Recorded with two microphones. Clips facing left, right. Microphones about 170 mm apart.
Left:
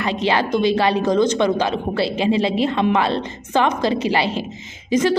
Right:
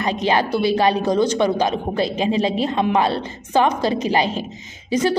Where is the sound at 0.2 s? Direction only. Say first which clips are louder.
Left 1 dB; 15° right (ahead or behind).